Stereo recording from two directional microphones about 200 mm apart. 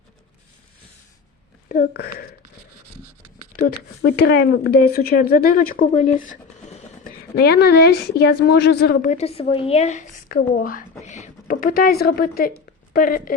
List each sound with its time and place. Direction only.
1.6 s speech: 45° left (ahead or behind)
3.7 s speech: 50° left (ahead or behind)
5.8 s a sound: 35° left (ahead or behind)
7.3 s speech: 55° left (ahead or behind)
9.0 s a woman's voice: 30° left (ahead or behind)
11.0 s a sound: 35° left (ahead or behind)
12.9 s speech: 45° left (ahead or behind)